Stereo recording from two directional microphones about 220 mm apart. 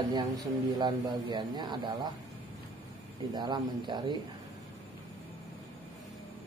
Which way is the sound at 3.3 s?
20° right (ahead or behind).